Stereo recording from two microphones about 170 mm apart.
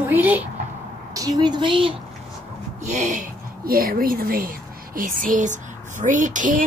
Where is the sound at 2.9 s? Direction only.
45° right (ahead or behind).